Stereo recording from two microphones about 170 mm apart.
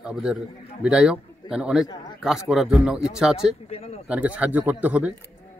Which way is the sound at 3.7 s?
35° left (ahead or behind).